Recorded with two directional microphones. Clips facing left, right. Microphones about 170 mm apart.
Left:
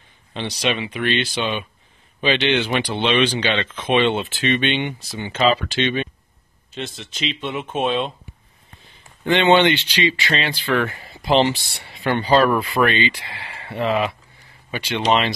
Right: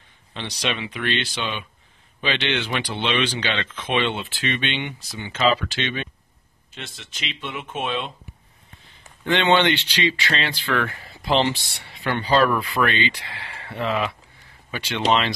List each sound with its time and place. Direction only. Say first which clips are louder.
0.3 s speech: left 5 dB; 15° left (ahead or behind)
4.6 s speech: left 6 dB; 50° left (ahead or behind)
5.1 s speech: left 2 dB; 30° left (ahead or behind)
9.2 s speech: left 4 dB; 5° left (ahead or behind)
12.0 s speech: left 3 dB; 25° left (ahead or behind)